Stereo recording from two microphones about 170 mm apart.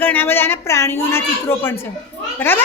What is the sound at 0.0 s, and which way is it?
A woman's voice, 10° left (ahead or behind).